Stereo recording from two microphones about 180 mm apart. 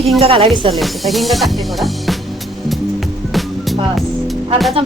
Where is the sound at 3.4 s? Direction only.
Centre (ahead or behind).